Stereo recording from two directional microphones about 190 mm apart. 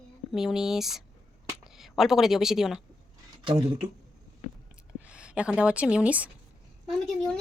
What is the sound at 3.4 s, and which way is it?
Speech, 30° right (ahead or behind).